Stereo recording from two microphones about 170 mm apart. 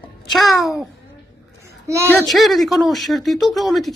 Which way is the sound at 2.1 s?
Centre (ahead or behind).